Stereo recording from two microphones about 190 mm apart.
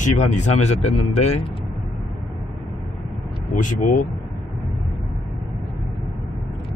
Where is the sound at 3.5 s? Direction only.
45° left (ahead or behind).